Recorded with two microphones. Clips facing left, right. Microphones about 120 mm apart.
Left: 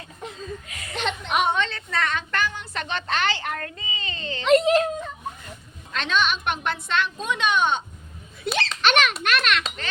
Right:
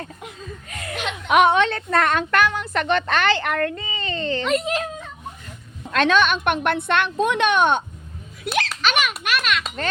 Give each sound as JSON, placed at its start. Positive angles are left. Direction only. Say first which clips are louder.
{"t": 0.7, "sound": "speech", "louder": "right 7 dB", "side_deg": -50}
{"t": 1.3, "sound": "a woman's voice", "louder": "right 9 dB", "side_deg": -65}
{"t": 4.4, "sound": "a child's voice", "louder": "left 7 dB", "side_deg": 0}
{"t": 5.9, "sound": "a woman's voice", "louder": "right 6 dB", "side_deg": -55}
{"t": 8.4, "sound": "a sound", "louder": "right 1 dB", "side_deg": -10}
{"t": 9.2, "sound": "a child's voice", "louder": "even", "side_deg": -5}